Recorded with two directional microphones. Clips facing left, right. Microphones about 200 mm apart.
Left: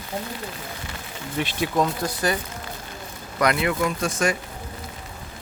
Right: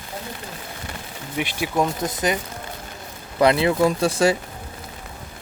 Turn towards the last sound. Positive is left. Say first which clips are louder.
# right 5 dB
turn(degrees=-30)  # may be behind; listen again after turning